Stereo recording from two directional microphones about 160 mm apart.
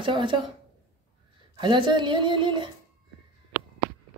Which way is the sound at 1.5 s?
30° right (ahead or behind).